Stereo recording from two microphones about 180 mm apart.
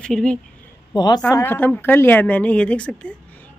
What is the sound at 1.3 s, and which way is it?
A woman's voice, 10° left (ahead or behind).